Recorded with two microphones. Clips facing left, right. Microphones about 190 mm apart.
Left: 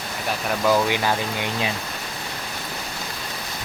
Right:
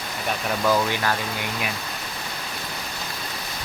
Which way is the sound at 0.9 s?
20° left (ahead or behind).